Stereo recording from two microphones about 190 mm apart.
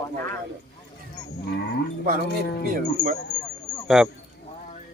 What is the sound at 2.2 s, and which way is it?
Speech, 60° left (ahead or behind).